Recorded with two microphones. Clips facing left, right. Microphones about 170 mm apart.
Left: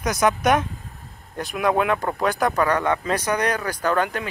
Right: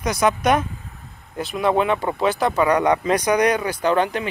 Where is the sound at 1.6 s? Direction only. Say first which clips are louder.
Right 1 dB; centre (ahead or behind).